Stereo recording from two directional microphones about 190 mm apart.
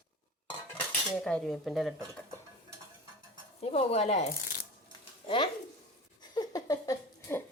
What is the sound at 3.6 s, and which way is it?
Speech, 35° left (ahead or behind).